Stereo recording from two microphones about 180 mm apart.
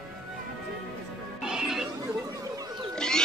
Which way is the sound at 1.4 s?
5° right (ahead or behind).